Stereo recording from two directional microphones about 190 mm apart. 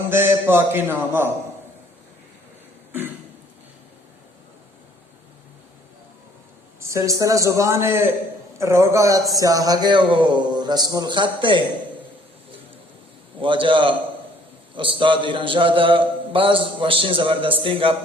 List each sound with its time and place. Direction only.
0.1 s a man's voice: 10° right (ahead or behind)
6.7 s a man's voice: 15° right (ahead or behind)
13.4 s a man's voice: 25° right (ahead or behind)